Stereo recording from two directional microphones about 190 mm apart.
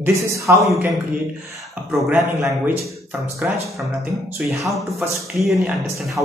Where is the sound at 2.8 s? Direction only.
10° right (ahead or behind).